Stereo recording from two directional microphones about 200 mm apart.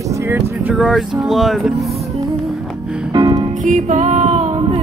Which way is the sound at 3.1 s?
25° right (ahead or behind).